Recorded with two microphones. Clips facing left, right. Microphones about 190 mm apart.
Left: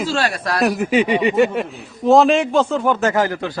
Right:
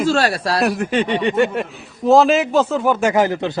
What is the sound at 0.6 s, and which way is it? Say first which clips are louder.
A man's voice: left 3 dB; centre (ahead or behind).